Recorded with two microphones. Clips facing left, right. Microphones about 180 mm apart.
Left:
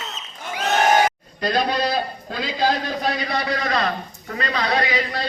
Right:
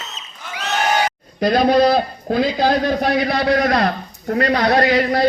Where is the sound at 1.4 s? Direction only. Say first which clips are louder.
Right 8 dB; 55° right (ahead or behind).